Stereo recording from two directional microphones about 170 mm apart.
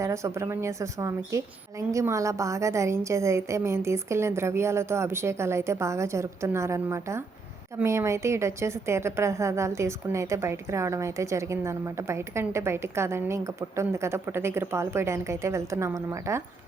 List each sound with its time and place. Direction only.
0.0 s a woman's voice: 15° right (ahead or behind)